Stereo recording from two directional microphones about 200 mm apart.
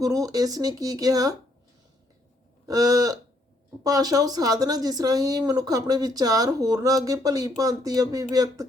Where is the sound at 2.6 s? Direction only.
15° right (ahead or behind).